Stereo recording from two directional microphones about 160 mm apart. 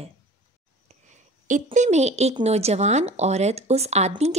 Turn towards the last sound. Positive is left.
turn(degrees=-40)  # may be behind; listen again after turning